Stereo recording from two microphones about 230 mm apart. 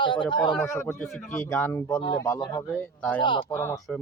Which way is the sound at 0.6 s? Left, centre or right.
Centre.